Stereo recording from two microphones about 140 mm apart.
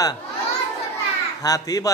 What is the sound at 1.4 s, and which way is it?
Speech, 25° left (ahead or behind).